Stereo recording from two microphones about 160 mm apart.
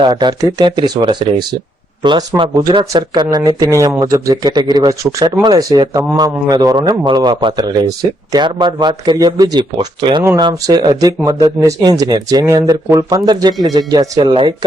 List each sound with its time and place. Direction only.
0.0 s speech: 30° right (ahead or behind)